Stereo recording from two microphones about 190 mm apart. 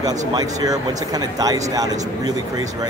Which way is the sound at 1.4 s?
20° right (ahead or behind).